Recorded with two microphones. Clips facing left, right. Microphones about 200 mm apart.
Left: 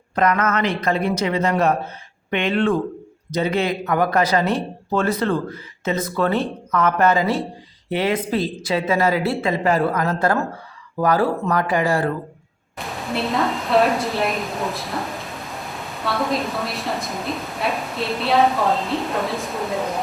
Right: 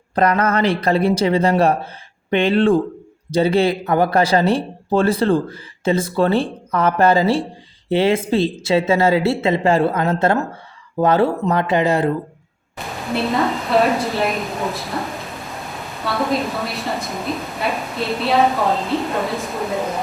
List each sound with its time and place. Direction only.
0.2 s speech: 35° right (ahead or behind)
12.8 s a woman's voice: centre (ahead or behind)